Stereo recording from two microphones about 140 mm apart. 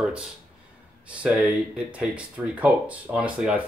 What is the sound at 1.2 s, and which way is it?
Speech, 10° right (ahead or behind).